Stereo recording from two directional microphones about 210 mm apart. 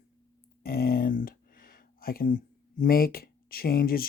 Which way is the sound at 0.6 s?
45° left (ahead or behind).